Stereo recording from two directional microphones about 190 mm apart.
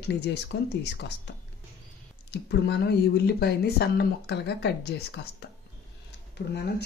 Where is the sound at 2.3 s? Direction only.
60° left (ahead or behind).